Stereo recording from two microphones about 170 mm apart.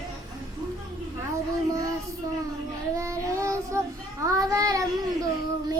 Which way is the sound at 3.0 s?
15° right (ahead or behind).